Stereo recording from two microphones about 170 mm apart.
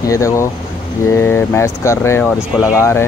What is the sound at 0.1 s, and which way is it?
Speech, 20° left (ahead or behind).